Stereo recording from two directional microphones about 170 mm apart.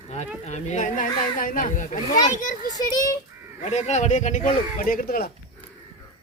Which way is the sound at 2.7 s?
20° left (ahead or behind).